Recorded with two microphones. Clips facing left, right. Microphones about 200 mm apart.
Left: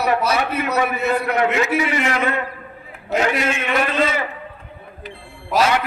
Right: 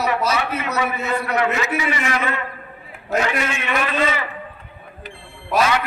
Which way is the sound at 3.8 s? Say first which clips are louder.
Even; 50° left (ahead or behind).